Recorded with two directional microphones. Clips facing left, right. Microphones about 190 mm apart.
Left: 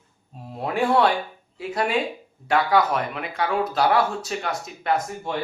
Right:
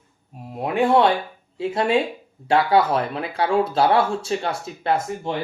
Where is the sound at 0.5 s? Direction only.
20° right (ahead or behind).